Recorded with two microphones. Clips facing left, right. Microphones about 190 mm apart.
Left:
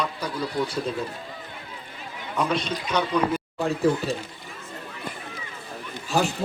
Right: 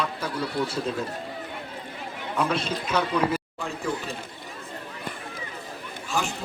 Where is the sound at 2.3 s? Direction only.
5° right (ahead or behind).